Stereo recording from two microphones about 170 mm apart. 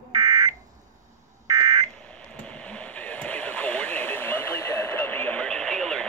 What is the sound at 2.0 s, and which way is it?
Radio, 5° left (ahead or behind).